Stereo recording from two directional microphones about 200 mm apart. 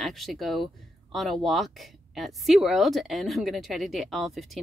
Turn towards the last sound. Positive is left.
turn(degrees=0)  # may be behind; listen again after turning